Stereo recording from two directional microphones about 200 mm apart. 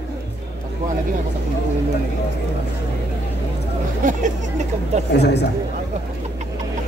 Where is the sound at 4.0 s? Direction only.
40° right (ahead or behind).